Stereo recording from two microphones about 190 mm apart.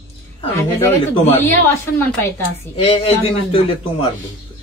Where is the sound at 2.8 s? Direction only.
30° left (ahead or behind).